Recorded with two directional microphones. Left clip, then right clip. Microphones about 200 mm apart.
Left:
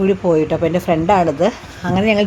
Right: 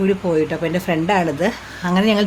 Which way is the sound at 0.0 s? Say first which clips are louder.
Left 3 dB; 10° left (ahead or behind).